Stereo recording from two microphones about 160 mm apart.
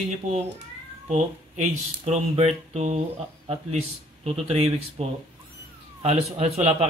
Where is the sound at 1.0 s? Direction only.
45° right (ahead or behind).